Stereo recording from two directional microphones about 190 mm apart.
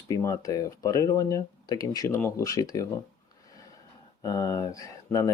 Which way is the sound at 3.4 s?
20° left (ahead or behind).